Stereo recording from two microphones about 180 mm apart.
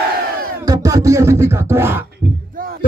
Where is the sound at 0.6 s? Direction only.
20° right (ahead or behind).